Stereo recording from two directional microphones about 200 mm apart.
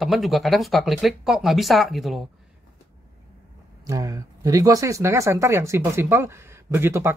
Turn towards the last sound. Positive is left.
turn(degrees=-10)  # may be behind; listen again after turning